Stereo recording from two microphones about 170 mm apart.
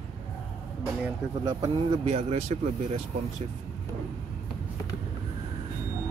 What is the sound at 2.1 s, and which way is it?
Speech, 40° right (ahead or behind).